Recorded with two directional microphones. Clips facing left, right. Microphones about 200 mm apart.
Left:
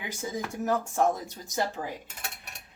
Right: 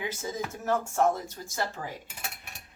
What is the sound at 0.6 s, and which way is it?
A woman's voice, 15° left (ahead or behind).